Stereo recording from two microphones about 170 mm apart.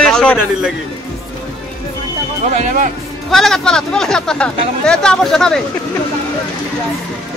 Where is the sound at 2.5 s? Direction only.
45° right (ahead or behind).